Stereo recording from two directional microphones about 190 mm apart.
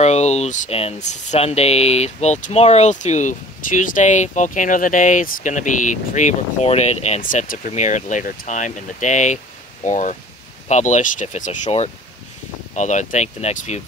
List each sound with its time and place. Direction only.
0.0 s speech: 35° left (ahead or behind)